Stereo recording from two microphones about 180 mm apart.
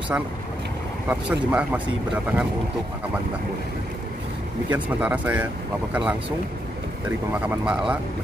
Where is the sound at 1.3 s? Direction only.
10° right (ahead or behind).